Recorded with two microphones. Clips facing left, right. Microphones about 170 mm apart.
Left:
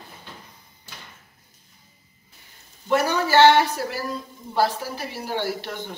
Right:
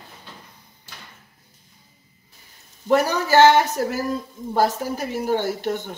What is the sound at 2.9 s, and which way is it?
Speech, 40° right (ahead or behind).